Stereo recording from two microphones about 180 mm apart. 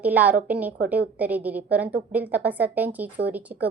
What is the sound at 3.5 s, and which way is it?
Speech, 50° right (ahead or behind).